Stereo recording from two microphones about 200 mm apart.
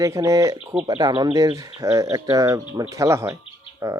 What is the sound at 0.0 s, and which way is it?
Speech, 15° right (ahead or behind).